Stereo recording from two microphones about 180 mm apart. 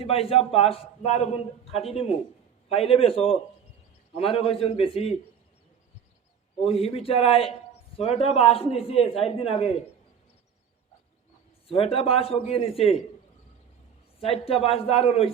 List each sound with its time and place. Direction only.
0.0 s a man's voice: 35° left (ahead or behind)
6.7 s a man's voice: 35° left (ahead or behind)
11.7 s a man's voice: 30° left (ahead or behind)
14.2 s a man's voice: 35° left (ahead or behind)